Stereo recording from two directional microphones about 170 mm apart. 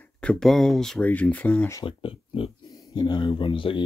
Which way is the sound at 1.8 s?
30° left (ahead or behind).